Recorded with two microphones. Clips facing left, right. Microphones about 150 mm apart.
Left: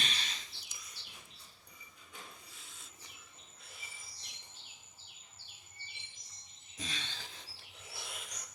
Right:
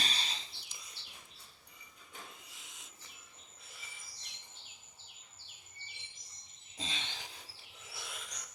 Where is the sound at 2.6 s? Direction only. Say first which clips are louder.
Even; 20° right (ahead or behind).